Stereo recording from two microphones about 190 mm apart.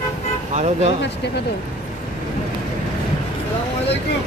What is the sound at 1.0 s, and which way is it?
Speech, 60° left (ahead or behind).